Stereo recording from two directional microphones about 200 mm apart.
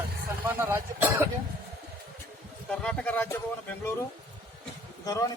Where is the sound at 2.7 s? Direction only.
5° left (ahead or behind).